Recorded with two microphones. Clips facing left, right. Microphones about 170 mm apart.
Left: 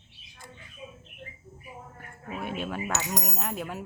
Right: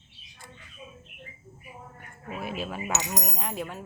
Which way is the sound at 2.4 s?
5° right (ahead or behind).